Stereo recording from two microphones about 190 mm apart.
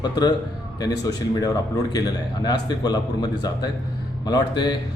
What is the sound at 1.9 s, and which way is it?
A man's voice, 20° left (ahead or behind).